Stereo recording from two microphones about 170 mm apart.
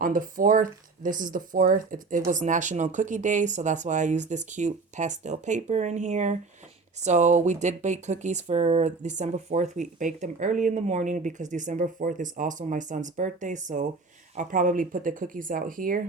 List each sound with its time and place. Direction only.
0.0 s speech: 55° right (ahead or behind)